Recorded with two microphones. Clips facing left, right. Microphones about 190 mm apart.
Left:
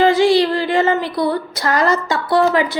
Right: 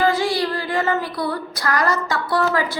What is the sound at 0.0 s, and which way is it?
Female singing, 25° left (ahead or behind).